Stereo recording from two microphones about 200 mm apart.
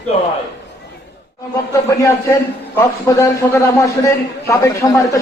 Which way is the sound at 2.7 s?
15° left (ahead or behind).